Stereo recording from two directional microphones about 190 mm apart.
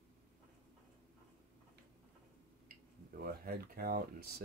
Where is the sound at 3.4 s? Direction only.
50° right (ahead or behind).